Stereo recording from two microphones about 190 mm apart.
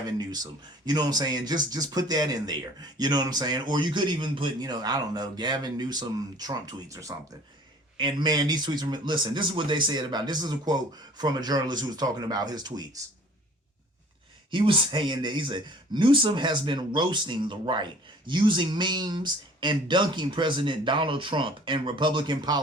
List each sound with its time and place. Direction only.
0.2 s speech: 20° right (ahead or behind)
14.5 s speech: 25° right (ahead or behind)